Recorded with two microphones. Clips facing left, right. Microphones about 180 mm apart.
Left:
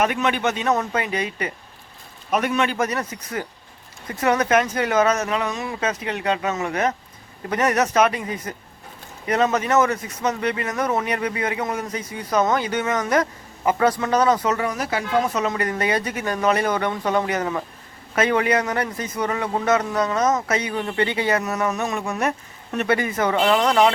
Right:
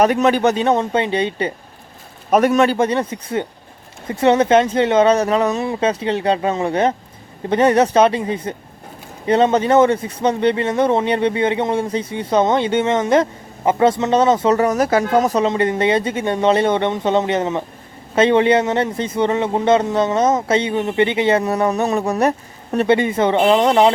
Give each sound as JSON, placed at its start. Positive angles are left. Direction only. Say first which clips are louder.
{"t": 0.0, "sound": "speech", "louder": "right 7 dB", "side_deg": -35}
{"t": 2.3, "sound": "speech", "louder": "right 8 dB", "side_deg": -40}
{"t": 2.7, "sound": "speech", "louder": "right 6 dB", "side_deg": -30}
{"t": 14.5, "sound": "speech", "louder": "right 9 dB", "side_deg": -45}
{"t": 15.4, "sound": "speech", "louder": "right 6 dB", "side_deg": -25}